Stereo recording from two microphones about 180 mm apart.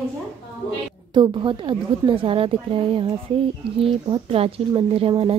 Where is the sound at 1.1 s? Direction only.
25° right (ahead or behind).